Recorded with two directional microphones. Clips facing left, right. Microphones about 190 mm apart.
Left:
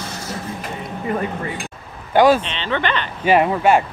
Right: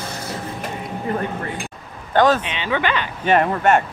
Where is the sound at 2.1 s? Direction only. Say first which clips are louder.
Left 3 dB; 10° left (ahead or behind).